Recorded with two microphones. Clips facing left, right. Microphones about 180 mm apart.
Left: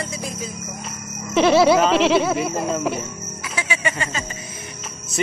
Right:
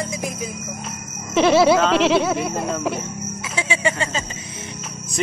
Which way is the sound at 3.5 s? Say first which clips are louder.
Right 3 dB; 25° right (ahead or behind).